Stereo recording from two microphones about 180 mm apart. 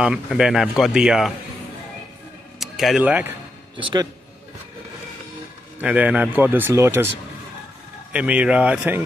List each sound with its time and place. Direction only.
0.0 s a man's voice: 5° right (ahead or behind)
2.6 s speech: centre (ahead or behind)
3.7 s speech: 25° right (ahead or behind)
5.8 s speech: 5° right (ahead or behind)
8.1 s speech: 5° right (ahead or behind)